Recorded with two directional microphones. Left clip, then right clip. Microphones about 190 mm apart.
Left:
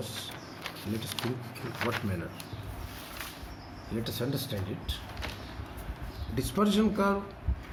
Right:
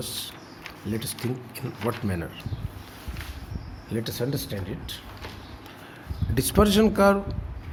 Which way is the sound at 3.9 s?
45° right (ahead or behind).